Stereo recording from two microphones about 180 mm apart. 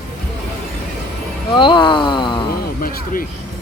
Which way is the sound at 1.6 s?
25° left (ahead or behind).